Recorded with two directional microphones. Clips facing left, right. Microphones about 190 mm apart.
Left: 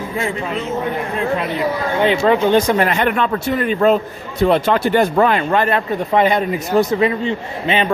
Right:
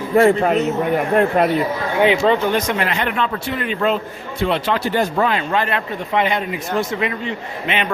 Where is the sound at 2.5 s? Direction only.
30° left (ahead or behind).